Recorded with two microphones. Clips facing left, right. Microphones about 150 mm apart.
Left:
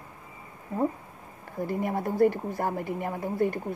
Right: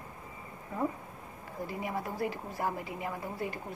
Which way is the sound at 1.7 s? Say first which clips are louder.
Left 8 dB; 55° left (ahead or behind).